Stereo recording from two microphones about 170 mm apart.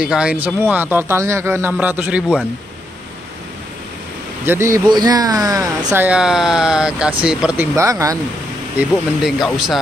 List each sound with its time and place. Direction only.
0.0 s a man's voice: 5° right (ahead or behind)
4.5 s a man's voice: 15° right (ahead or behind)
6.0 s a man's voice: 5° right (ahead or behind)
7.7 s speech: 20° right (ahead or behind)
8.7 s speech: centre (ahead or behind)